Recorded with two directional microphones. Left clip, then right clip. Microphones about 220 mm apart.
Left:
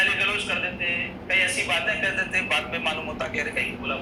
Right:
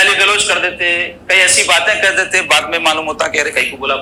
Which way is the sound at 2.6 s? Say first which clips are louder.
Right 13 dB; 50° right (ahead or behind).